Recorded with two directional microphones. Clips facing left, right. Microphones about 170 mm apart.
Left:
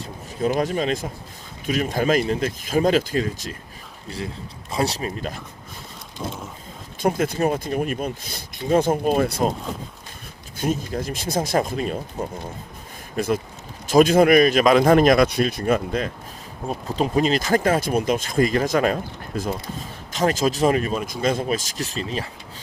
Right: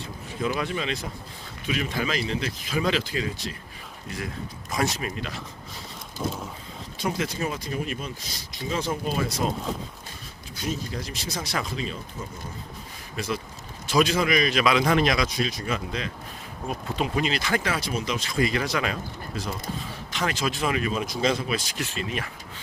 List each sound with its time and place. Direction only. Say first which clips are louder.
0.0 s speech: left 5 dB; 40° left (ahead or behind)
4.7 s speech: left 3 dB; 30° left (ahead or behind)
6.2 s mechanisms: right 1 dB; centre (ahead or behind)
7.0 s speech: left 7 dB; 50° left (ahead or behind)
10.6 s speech: left 7 dB; 50° left (ahead or behind)
16.6 s speech: left 4 dB; 35° left (ahead or behind)
21.1 s speech: left 4 dB; 50° left (ahead or behind); by 22.3 s 30° left (ahead or behind)